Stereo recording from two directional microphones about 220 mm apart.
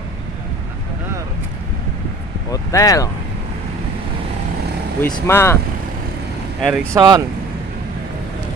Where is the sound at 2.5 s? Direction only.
15° left (ahead or behind).